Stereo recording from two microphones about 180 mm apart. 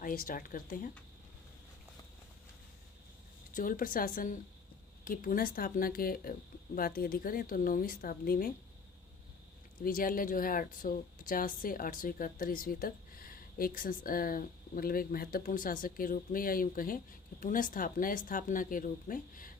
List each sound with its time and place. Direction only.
0.0 s speech: 50° left (ahead or behind)
3.5 s speech: 50° left (ahead or behind)
9.8 s speech: 50° left (ahead or behind)